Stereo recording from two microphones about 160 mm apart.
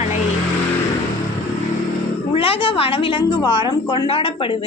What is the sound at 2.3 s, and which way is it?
A woman's voice, 35° left (ahead or behind).